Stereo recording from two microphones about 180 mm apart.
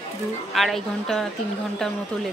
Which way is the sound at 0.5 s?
Centre (ahead or behind).